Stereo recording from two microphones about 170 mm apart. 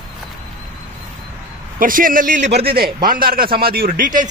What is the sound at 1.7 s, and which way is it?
Speech, 55° right (ahead or behind).